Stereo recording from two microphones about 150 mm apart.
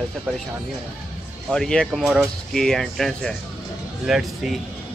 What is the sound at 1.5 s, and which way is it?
Speech, 5° left (ahead or behind).